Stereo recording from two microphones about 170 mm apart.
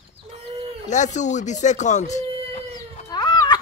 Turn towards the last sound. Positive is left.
turn(degrees=25)  # may be behind; listen again after turning